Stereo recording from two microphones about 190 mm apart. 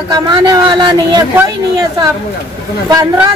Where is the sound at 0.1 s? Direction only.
20° right (ahead or behind).